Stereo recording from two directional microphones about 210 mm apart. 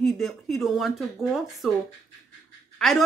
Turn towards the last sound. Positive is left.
turn(degrees=0)  # may be behind; listen again after turning